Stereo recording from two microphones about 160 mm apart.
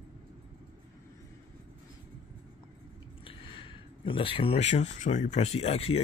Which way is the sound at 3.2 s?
35° left (ahead or behind).